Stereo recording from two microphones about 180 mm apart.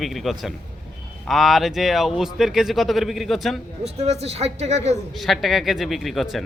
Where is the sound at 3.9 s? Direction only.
35° right (ahead or behind).